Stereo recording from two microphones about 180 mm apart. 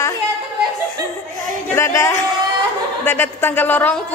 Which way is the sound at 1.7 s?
15° left (ahead or behind).